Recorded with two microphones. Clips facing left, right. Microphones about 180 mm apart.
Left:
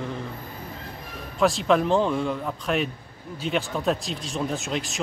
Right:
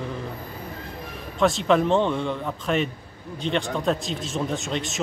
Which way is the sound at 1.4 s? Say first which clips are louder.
Right 1 dB; centre (ahead or behind).